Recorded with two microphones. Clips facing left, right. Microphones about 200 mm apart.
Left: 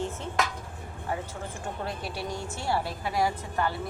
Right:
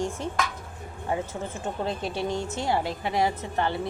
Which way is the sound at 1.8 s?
25° right (ahead or behind).